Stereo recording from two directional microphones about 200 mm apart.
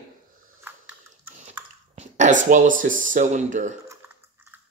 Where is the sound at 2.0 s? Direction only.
35° right (ahead or behind).